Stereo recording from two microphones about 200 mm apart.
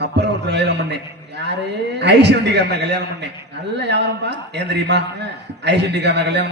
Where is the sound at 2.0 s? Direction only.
55° right (ahead or behind).